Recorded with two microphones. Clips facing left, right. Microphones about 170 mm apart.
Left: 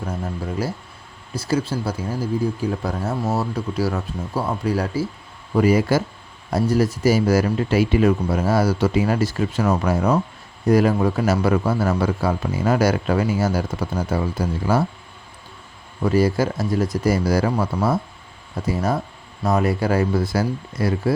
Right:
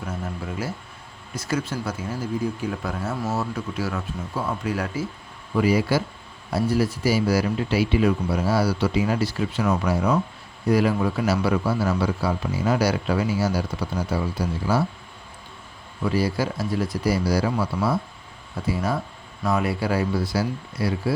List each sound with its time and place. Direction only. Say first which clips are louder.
0.0 s speech: left 3 dB; 35° left (ahead or behind)
5.5 s a man's voice: left 3 dB; 45° left (ahead or behind)
16.0 s a man's voice: left 5 dB; 45° left (ahead or behind)